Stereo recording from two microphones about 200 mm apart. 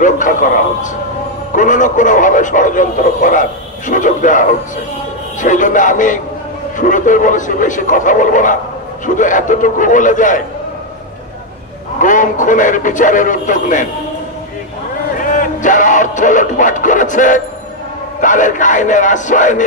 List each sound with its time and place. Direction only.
0.0 s a man's voice: 40° left (ahead or behind)
12.0 s a man's voice: 40° left (ahead or behind)
15.2 s music: 40° left (ahead or behind)
18.2 s a man's voice: 40° left (ahead or behind)